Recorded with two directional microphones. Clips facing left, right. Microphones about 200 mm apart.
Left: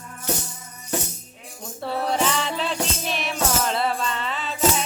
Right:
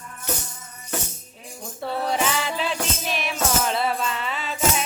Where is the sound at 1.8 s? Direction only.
Centre (ahead or behind).